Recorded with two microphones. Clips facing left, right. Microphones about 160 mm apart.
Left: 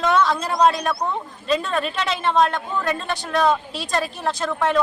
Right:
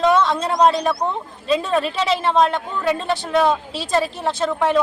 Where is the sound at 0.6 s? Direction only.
Centre (ahead or behind).